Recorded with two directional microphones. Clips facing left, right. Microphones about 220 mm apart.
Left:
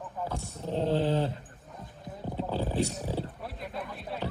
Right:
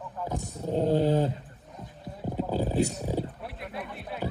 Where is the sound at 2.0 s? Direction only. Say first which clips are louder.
Right 3 dB; 10° right (ahead or behind).